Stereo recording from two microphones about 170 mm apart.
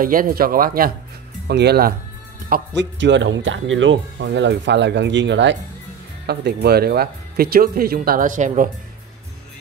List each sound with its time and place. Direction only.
0.0 s speech: 55° right (ahead or behind)
1.5 s speech: 75° right (ahead or behind)
2.5 s speech: 90° right
6.2 s speech: 70° right (ahead or behind); by 8.6 s 45° right (ahead or behind)